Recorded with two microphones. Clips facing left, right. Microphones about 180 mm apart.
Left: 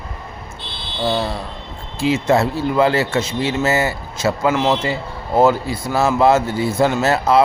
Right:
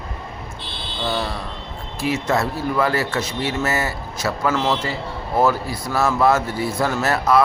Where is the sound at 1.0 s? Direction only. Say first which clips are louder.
Left 4 dB; 25° left (ahead or behind).